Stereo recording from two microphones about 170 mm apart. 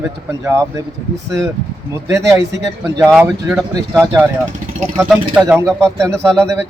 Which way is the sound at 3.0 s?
Centre (ahead or behind).